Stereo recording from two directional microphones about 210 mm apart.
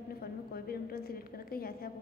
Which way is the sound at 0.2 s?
45° left (ahead or behind).